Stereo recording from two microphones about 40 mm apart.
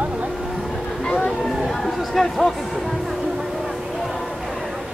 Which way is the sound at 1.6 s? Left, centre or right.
Centre.